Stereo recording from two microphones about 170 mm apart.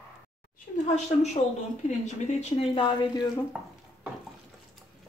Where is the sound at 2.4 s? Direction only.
30° left (ahead or behind).